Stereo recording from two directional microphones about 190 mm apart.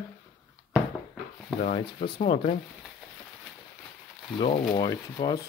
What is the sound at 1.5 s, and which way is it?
Speech, 45° left (ahead or behind).